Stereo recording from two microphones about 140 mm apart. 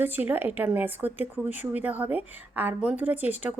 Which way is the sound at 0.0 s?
15° right (ahead or behind).